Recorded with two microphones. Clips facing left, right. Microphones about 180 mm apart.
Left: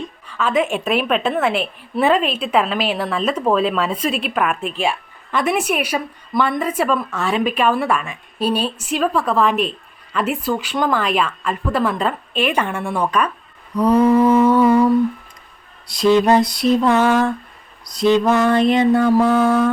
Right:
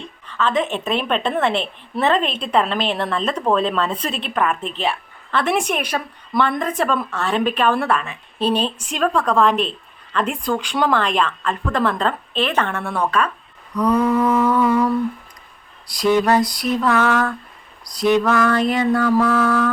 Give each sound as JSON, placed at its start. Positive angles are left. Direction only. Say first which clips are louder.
{"t": 0.3, "sound": "a woman's voice", "louder": "left 1 dB", "side_deg": 10}
{"t": 13.7, "sound": "mantra", "louder": "left 4 dB", "side_deg": 25}
{"t": 16.1, "sound": "mantra", "louder": "left 2 dB", "side_deg": 20}